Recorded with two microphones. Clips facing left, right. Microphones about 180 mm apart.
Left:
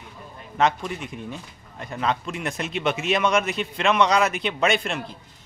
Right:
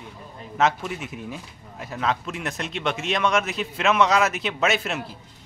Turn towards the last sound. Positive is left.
turn(degrees=-5)  # may be behind; listen again after turning